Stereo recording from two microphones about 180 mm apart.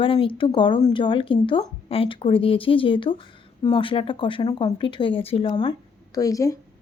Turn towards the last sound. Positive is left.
turn(degrees=20)  # may be behind; listen again after turning